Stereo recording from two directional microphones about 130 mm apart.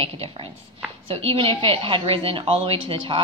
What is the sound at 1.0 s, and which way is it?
A woman's voice, 45° right (ahead or behind).